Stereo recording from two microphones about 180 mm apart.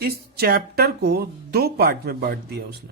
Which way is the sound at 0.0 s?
60° right (ahead or behind).